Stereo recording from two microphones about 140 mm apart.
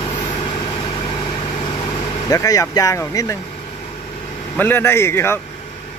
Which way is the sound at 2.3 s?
25° left (ahead or behind).